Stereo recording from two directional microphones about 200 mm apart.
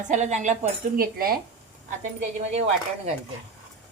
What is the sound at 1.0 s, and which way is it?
Speech, 45° right (ahead or behind).